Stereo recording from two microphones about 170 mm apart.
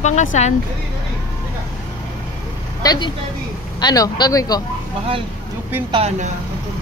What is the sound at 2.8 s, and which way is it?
Speech, 25° left (ahead or behind).